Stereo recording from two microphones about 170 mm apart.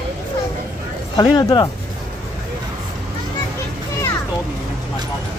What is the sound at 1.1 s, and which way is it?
Speech, 20° left (ahead or behind).